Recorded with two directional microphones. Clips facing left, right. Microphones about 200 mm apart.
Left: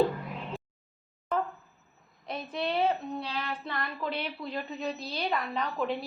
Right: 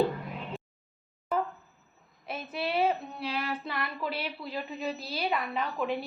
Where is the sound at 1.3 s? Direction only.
5° right (ahead or behind).